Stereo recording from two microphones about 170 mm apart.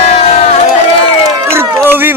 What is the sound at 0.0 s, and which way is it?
Crowd, 35° left (ahead or behind).